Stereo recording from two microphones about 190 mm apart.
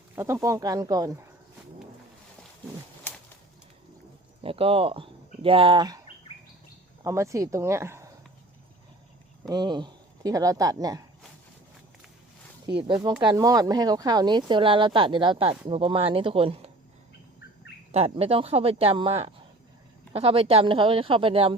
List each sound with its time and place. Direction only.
0.2 s speech: 15° right (ahead or behind)
4.4 s speech: 30° right (ahead or behind)
7.0 s speech: 15° right (ahead or behind)
9.5 s speech: 20° right (ahead or behind)
12.6 s speech: 20° right (ahead or behind)
17.9 s speech: 30° right (ahead or behind)